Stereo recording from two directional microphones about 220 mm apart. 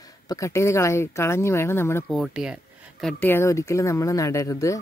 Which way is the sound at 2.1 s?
Centre (ahead or behind).